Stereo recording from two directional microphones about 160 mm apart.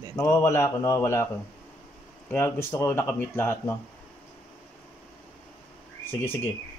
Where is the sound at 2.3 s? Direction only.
15° left (ahead or behind).